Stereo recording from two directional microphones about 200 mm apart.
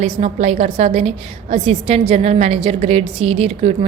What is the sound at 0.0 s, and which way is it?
A woman's voice, 35° right (ahead or behind).